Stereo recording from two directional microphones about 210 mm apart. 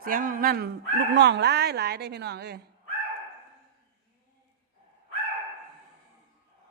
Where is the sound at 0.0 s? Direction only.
40° right (ahead or behind).